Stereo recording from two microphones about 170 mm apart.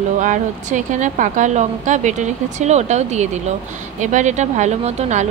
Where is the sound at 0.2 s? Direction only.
45° right (ahead or behind).